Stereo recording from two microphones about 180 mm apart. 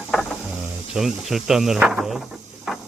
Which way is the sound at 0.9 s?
Centre (ahead or behind).